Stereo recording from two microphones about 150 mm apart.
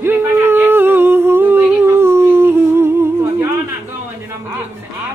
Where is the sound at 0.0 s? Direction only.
15° right (ahead or behind).